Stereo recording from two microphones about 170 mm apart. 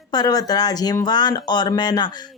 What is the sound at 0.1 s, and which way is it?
Speech, 20° left (ahead or behind).